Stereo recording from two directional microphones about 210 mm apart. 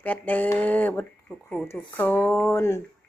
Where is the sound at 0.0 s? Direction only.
10° left (ahead or behind).